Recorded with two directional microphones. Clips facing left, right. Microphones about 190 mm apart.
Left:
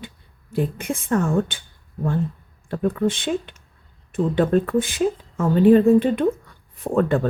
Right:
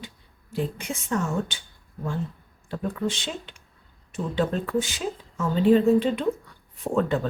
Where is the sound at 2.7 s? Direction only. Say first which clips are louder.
Left 7 dB; 55° left (ahead or behind).